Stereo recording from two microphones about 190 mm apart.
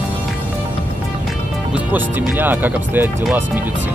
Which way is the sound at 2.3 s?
10° right (ahead or behind).